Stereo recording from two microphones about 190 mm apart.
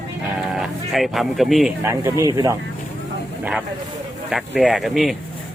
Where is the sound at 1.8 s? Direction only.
15° right (ahead or behind).